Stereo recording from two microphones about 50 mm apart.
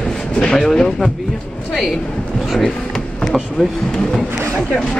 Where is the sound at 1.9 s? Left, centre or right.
Centre.